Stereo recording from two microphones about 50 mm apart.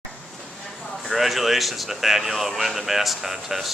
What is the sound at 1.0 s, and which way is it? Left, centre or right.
Speech, centre.